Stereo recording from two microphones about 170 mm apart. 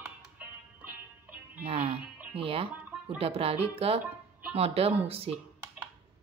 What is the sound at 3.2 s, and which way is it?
A woman's voice, 35° right (ahead or behind).